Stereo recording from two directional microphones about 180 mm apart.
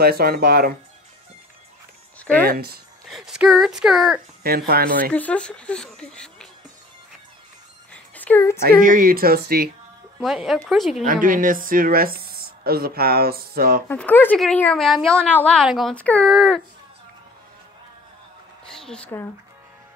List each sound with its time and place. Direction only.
0.0 s speech: 60° right (ahead or behind)
2.4 s speech: 55° right (ahead or behind)
3.1 s speech: centre (ahead or behind)
4.4 s speech: 60° right (ahead or behind)
5.1 s speech: 10° left (ahead or behind)
7.9 s a sound: 10° left (ahead or behind)
8.6 s speech: 50° right (ahead or behind)
10.2 s speech: centre (ahead or behind)
11.1 s speech: 50° right (ahead or behind)
13.8 s speech: 10° left (ahead or behind)
18.7 s a sound: 5° left (ahead or behind)